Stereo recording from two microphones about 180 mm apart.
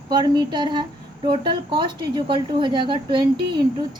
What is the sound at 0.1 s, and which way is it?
Speech, 25° right (ahead or behind).